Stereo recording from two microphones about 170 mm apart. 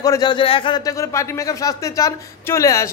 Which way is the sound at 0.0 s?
25° left (ahead or behind).